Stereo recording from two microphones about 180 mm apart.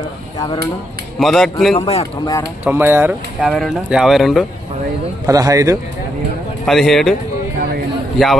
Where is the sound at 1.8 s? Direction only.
35° left (ahead or behind).